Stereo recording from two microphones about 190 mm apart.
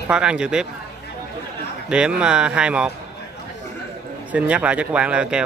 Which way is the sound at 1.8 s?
5° right (ahead or behind).